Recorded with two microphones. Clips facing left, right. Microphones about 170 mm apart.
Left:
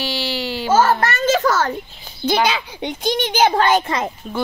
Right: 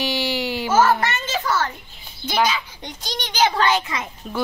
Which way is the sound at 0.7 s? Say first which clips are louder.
Left 2 dB; 30° left (ahead or behind).